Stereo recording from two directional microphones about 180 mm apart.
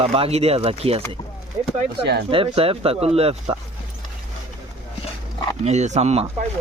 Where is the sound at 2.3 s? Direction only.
30° right (ahead or behind).